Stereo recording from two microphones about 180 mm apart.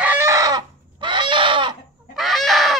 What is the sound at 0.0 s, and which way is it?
Chicken, 10° right (ahead or behind).